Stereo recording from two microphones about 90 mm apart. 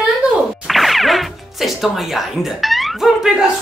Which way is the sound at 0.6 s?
Centre (ahead or behind).